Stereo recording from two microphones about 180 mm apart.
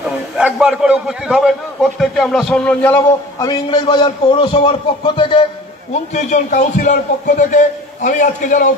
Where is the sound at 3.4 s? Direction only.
25° left (ahead or behind).